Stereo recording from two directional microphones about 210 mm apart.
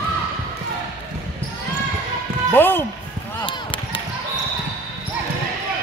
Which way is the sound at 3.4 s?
25° left (ahead or behind).